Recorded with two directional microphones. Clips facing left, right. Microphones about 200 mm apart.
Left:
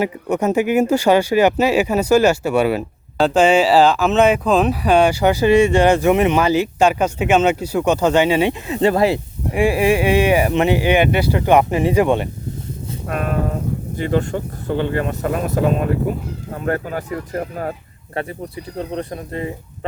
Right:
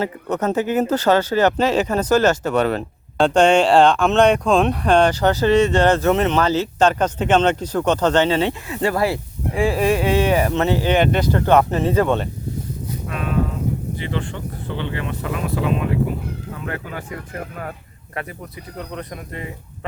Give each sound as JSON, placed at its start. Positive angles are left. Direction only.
{"t": 0.0, "sound": "speech", "side_deg": 10}
{"t": 13.1, "sound": "speech", "side_deg": 50}